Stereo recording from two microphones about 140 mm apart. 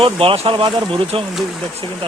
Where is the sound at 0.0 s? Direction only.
40° right (ahead or behind).